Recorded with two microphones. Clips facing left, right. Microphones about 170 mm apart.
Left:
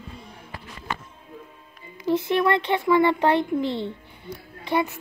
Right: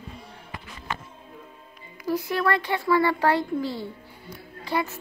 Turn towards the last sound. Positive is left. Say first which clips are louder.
# left 3 dB
turn(degrees=20)  # may be behind; listen again after turning